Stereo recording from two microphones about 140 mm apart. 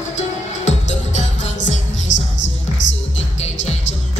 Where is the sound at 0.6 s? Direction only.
55° left (ahead or behind).